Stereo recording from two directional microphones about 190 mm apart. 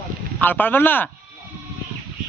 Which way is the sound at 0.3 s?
10° left (ahead or behind).